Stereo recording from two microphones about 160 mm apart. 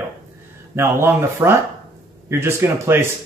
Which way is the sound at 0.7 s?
15° right (ahead or behind).